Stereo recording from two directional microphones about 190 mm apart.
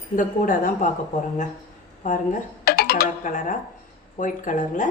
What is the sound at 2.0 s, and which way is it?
Speech, 40° left (ahead or behind).